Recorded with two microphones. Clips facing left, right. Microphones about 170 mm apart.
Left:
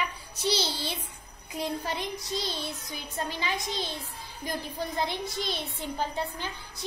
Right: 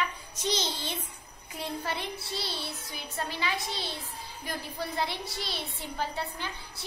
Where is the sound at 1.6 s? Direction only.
15° left (ahead or behind).